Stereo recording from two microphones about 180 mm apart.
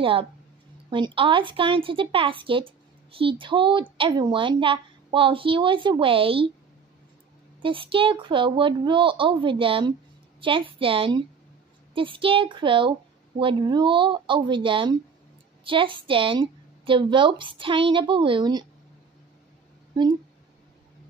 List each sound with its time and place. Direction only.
0.0 s a woman's voice: 30° right (ahead or behind)
7.6 s a woman's voice: 30° right (ahead or behind)